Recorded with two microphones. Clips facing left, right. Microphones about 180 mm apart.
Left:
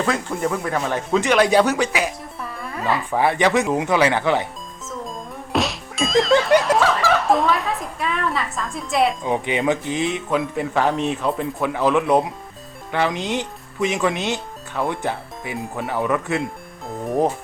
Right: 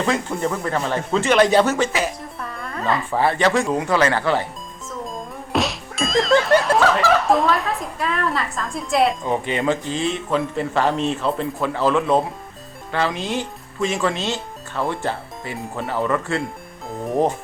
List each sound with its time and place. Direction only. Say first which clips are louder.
0.3 s speech: even; 5° left (ahead or behind)
4.9 s whack: right 1 dB; centre (ahead or behind)
9.2 s speech: even; 15° left (ahead or behind)
10.2 s speech: even; 5° left (ahead or behind)
15.5 s speech: left 1 dB; centre (ahead or behind)
15.9 s speech: even; 15° left (ahead or behind)
16.9 s speech: even; centre (ahead or behind)